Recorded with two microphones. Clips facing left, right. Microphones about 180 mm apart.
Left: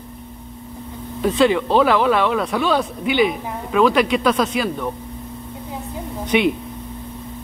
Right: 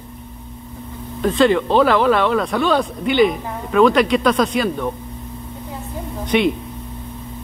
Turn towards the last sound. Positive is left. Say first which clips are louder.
# right 1 dB
turn(degrees=10)  # may be behind; listen again after turning